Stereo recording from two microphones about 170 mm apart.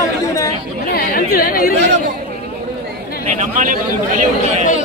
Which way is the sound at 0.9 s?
60° left (ahead or behind).